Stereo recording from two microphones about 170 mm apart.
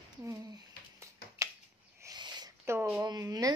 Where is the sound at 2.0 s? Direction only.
25° right (ahead or behind).